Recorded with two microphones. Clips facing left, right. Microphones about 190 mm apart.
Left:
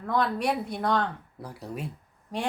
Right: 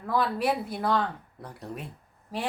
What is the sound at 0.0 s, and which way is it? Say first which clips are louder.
A woman's voice: even; 5° right (ahead or behind).